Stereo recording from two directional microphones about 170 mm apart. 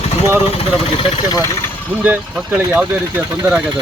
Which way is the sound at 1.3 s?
20° left (ahead or behind).